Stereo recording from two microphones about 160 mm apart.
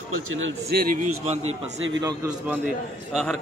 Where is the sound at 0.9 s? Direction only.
45° right (ahead or behind).